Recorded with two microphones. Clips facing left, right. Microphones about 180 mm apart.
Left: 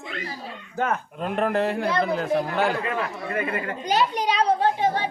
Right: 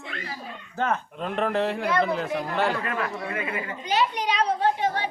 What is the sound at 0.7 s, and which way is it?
Speech, 10° left (ahead or behind).